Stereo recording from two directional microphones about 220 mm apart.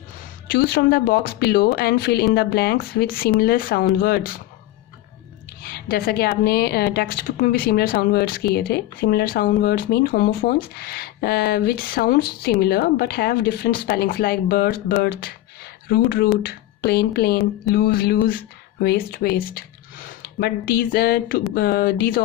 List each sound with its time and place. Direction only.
0.5 s speech: 45° left (ahead or behind)
5.6 s speech: 45° left (ahead or behind)